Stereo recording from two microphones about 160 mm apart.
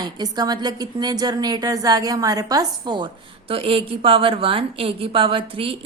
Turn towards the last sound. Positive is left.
turn(degrees=-35)  # may be behind; listen again after turning